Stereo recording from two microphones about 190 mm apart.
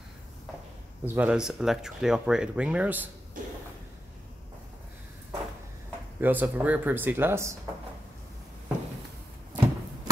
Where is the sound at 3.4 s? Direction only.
45° right (ahead or behind).